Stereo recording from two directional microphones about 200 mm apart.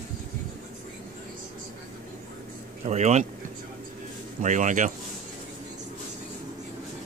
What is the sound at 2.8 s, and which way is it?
Speech, 35° right (ahead or behind).